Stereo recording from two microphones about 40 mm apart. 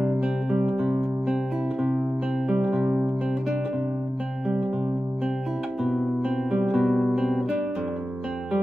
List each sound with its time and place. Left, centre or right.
0.5 s music: centre
2.4 s music: centre
5.8 s music: centre
6.2 s music: centre
6.8 s music: centre
7.2 s guitar: centre